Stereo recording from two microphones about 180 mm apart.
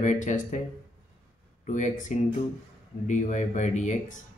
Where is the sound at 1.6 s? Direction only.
45° left (ahead or behind).